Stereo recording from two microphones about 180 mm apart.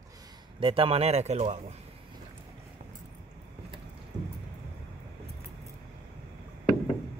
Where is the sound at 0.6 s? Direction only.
30° right (ahead or behind).